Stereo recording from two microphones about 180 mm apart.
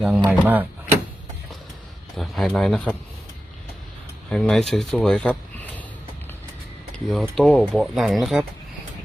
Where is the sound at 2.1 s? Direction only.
Centre (ahead or behind).